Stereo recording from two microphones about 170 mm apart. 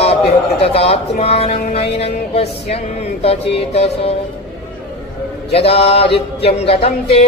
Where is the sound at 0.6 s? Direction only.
35° left (ahead or behind).